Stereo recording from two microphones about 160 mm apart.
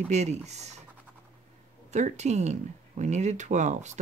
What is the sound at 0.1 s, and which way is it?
Speech, 45° right (ahead or behind).